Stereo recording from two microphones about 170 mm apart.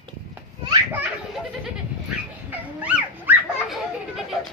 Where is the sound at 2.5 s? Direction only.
10° right (ahead or behind).